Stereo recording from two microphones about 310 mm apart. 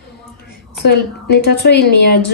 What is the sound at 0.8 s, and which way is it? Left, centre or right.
A woman's voice, left.